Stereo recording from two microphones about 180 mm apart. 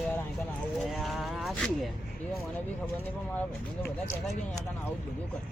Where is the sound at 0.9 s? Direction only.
Centre (ahead or behind).